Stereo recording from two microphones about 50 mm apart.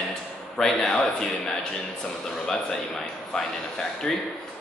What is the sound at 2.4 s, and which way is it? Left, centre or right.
Speech, centre.